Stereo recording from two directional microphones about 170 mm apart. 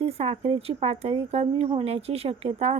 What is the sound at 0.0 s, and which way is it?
A woman's voice, 40° right (ahead or behind).